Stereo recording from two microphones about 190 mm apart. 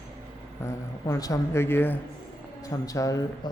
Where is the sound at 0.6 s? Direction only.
15° left (ahead or behind).